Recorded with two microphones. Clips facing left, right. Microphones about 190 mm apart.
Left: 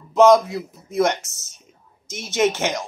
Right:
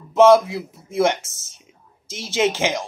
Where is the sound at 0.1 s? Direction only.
5° right (ahead or behind).